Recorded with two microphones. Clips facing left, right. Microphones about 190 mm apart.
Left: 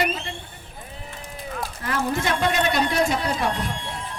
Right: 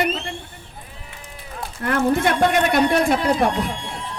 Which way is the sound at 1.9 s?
55° right (ahead or behind).